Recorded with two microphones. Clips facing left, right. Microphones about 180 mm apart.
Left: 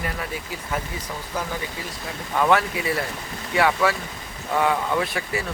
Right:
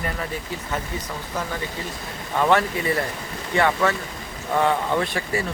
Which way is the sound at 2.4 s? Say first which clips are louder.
Even; centre (ahead or behind).